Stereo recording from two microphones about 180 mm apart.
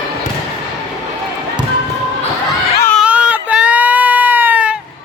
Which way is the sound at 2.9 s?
5° right (ahead or behind).